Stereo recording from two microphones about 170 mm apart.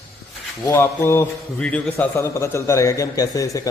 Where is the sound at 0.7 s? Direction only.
15° left (ahead or behind).